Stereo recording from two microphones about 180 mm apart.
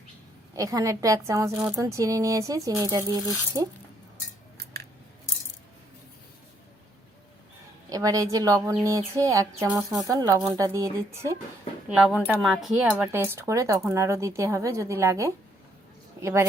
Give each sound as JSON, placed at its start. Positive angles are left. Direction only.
{"t": 0.5, "sound": "speech", "side_deg": -20}
{"t": 4.5, "sound": "scissors", "side_deg": -60}
{"t": 7.9, "sound": "speech", "side_deg": -20}